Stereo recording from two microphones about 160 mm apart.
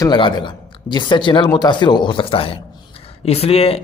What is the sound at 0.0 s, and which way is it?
A man's voice, 30° left (ahead or behind).